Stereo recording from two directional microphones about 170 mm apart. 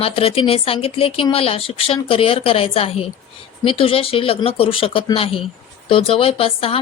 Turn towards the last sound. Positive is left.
turn(degrees=35)  # may be behind; listen again after turning